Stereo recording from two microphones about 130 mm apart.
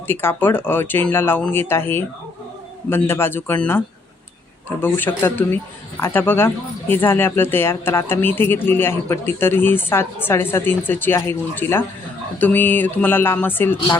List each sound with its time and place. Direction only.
0.1 s speech: 15° left (ahead or behind)